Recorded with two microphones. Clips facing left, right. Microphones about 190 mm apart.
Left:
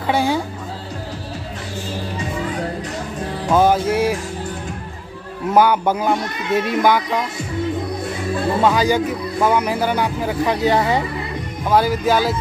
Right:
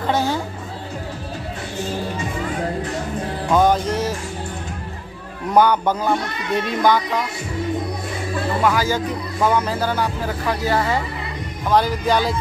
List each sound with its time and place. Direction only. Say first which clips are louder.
0.0 s music: left 2 dB; 10° left (ahead or behind)
3.5 s music: left 2 dB; 5° left (ahead or behind)
5.5 s speech: left 1 dB; 5° left (ahead or behind)
8.6 s speech: left 3 dB; 20° left (ahead or behind)
11.7 s speech: left 2 dB; 5° left (ahead or behind)